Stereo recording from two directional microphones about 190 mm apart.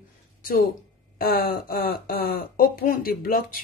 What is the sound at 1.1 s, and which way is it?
Speech, 50° left (ahead or behind).